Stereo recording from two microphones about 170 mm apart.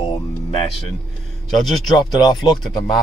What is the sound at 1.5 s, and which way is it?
Speech, centre (ahead or behind).